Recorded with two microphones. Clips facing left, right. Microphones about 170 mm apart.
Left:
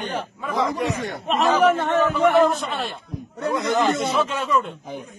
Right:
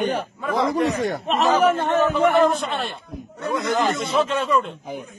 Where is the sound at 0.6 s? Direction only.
35° right (ahead or behind).